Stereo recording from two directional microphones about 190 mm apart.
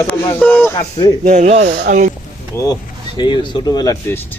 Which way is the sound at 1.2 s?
40° right (ahead or behind).